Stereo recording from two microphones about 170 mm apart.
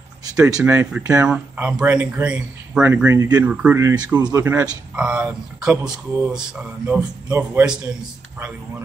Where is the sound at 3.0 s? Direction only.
20° right (ahead or behind).